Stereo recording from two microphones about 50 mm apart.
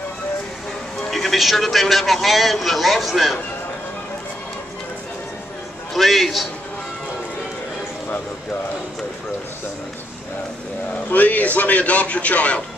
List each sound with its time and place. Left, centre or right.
1.1 s a man's voice: centre
5.9 s a man's voice: centre
11.1 s a man's voice: left